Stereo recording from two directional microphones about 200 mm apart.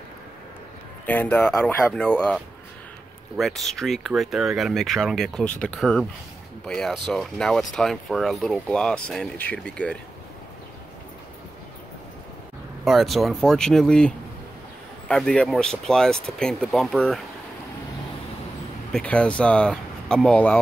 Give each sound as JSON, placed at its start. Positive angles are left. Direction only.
{"t": 1.0, "sound": "speech", "side_deg": 10}
{"t": 12.8, "sound": "speech", "side_deg": 0}
{"t": 18.9, "sound": "speech", "side_deg": 5}